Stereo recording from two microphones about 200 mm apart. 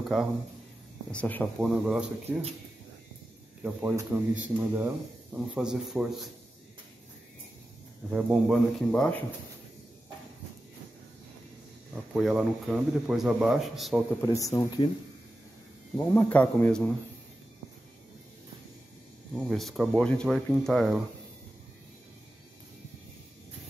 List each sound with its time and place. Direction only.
1.1 s a man's voice: 5° left (ahead or behind)
1.7 s speech: 5° right (ahead or behind)
3.6 s speech: 10° right (ahead or behind)
8.1 s speech: centre (ahead or behind)
11.9 s speech: 5° right (ahead or behind)
14.2 s a man's voice: 15° left (ahead or behind)
16.0 s a man's voice: 10° left (ahead or behind)
19.3 s speech: centre (ahead or behind)